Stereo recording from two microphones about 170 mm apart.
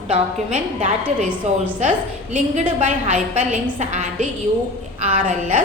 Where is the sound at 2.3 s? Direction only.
45° right (ahead or behind).